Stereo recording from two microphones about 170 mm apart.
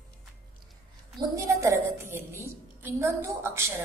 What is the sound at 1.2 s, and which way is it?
A woman's voice, 20° right (ahead or behind).